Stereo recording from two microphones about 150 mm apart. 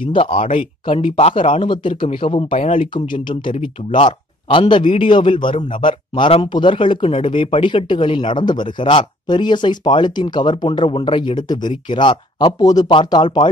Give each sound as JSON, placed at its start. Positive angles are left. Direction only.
{"t": 0.0, "sound": "speech", "side_deg": 35}